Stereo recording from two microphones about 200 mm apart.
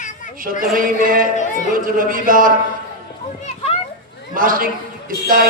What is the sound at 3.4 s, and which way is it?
Children playing, 30° left (ahead or behind).